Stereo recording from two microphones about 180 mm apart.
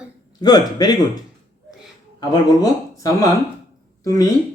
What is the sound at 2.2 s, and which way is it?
Speech, 20° left (ahead or behind).